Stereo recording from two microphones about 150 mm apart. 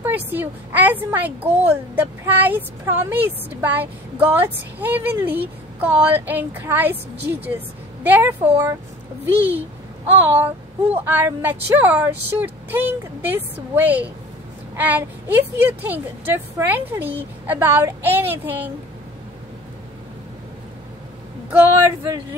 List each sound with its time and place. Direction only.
0.0 s a woman's voice: 10° right (ahead or behind)